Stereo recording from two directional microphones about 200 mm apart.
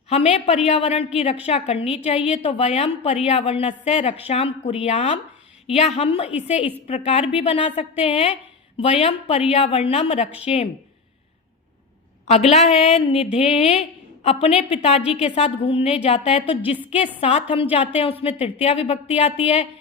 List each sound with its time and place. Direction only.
0.1 s a woman's voice: 30° left (ahead or behind)
12.3 s a woman's voice: 35° left (ahead or behind)
16.6 s a woman's voice: 10° right (ahead or behind)
17.2 s a woman's voice: 30° left (ahead or behind)